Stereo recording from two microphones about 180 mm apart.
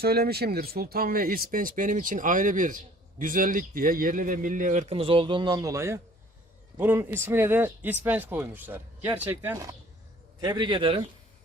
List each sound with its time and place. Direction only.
0.0 s a man's voice: 60° right (ahead or behind); by 11.0 s 25° right (ahead or behind)